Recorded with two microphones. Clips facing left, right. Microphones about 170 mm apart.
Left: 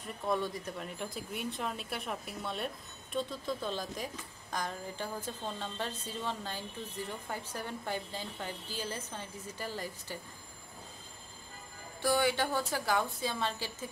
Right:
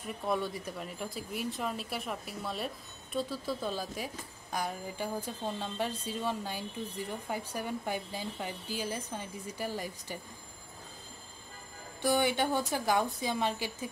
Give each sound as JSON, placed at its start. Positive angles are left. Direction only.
{"t": 0.3, "sound": "a woman's voice", "side_deg": -5}
{"t": 12.0, "sound": "a woman's voice", "side_deg": -20}